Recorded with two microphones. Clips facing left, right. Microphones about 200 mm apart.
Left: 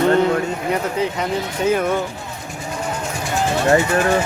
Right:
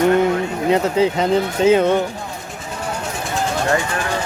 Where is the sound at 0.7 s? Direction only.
25° right (ahead or behind).